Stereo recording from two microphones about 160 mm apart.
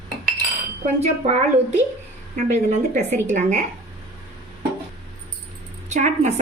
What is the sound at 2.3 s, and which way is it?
Speech, 45° right (ahead or behind).